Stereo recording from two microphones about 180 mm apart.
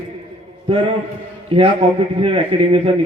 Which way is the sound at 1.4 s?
30° right (ahead or behind).